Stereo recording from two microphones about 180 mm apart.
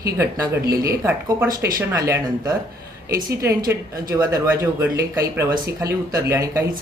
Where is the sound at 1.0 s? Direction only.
15° right (ahead or behind).